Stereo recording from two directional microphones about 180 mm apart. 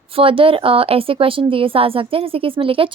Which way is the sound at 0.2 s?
30° right (ahead or behind).